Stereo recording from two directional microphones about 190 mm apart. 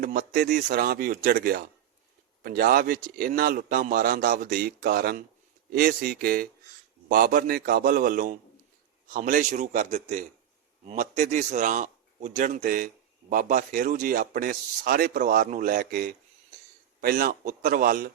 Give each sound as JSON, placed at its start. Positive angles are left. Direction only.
{"t": 0.0, "sound": "a man's voice", "side_deg": -45}